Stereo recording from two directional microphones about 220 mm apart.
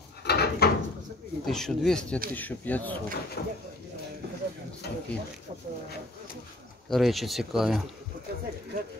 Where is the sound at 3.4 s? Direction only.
45° left (ahead or behind).